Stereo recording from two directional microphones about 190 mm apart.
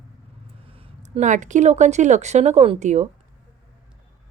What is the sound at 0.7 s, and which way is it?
Speech, 30° right (ahead or behind).